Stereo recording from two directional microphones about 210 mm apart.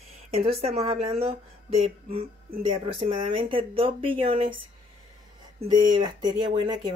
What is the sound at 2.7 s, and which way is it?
Speech, 25° right (ahead or behind).